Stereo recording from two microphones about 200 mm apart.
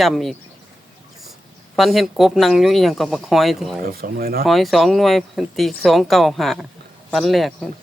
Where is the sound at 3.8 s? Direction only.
45° right (ahead or behind).